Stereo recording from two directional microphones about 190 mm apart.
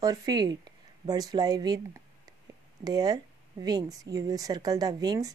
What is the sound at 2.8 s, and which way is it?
Speech, 20° right (ahead or behind).